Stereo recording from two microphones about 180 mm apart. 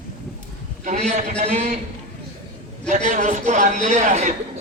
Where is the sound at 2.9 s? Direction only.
40° right (ahead or behind).